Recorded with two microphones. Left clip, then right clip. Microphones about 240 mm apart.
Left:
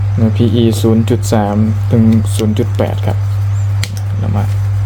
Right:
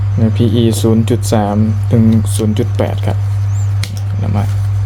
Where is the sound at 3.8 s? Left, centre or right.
Centre.